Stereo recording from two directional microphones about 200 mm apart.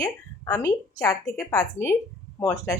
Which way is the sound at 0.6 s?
15° left (ahead or behind).